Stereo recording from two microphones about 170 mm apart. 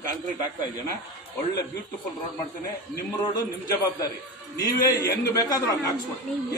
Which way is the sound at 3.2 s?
25° left (ahead or behind).